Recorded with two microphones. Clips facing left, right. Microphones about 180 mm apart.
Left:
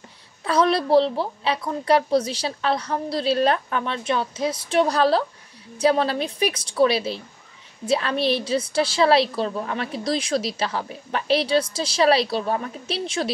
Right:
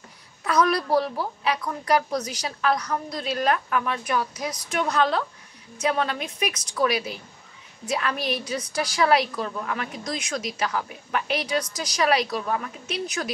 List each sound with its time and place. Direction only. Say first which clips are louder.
0.4 s a woman's voice: left 2 dB; 30° left (ahead or behind)